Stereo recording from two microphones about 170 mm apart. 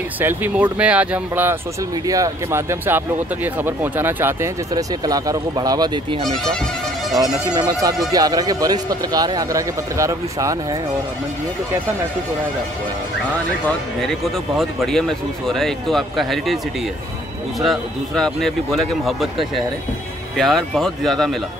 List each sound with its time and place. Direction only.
0.2 s speech: 10° right (ahead or behind)
7.5 s speech: 20° right (ahead or behind)
13.7 s speech: centre (ahead or behind)
17.6 s speech: centre (ahead or behind)
20.3 s speech: centre (ahead or behind)